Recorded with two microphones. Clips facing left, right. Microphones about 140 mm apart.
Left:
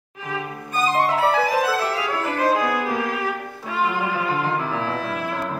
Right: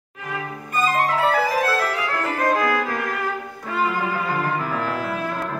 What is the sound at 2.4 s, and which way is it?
Violin, 5° left (ahead or behind).